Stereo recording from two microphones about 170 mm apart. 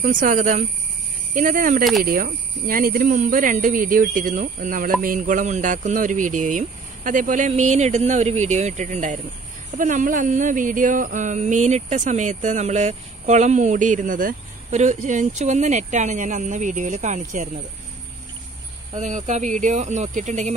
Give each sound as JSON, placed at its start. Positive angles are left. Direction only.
{"t": 0.0, "sound": "speech", "side_deg": -50}
{"t": 18.9, "sound": "speech", "side_deg": -45}